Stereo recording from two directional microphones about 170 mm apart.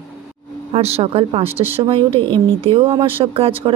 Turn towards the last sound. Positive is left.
turn(degrees=-35)  # may be behind; listen again after turning